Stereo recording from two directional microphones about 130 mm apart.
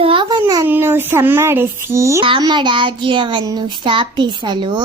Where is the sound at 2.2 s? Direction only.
40° right (ahead or behind).